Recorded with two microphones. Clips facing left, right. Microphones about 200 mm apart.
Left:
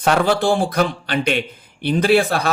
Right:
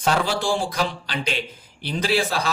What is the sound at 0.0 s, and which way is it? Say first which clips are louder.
Speech: left 6 dB; 60° left (ahead or behind).